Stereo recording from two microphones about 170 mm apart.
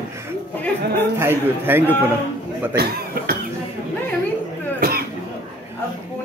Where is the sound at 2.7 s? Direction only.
65° right (ahead or behind).